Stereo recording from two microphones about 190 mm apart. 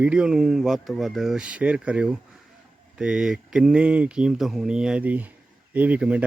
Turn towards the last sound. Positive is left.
turn(degrees=-5)  # may be behind; listen again after turning